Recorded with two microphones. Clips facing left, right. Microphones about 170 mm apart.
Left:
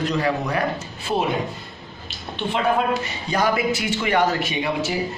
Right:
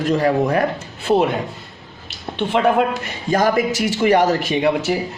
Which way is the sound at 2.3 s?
70° right (ahead or behind).